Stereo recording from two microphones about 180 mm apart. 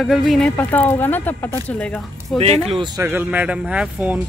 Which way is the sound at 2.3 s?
35° right (ahead or behind).